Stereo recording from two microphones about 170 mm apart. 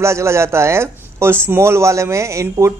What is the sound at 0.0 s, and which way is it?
A man's voice, 15° right (ahead or behind).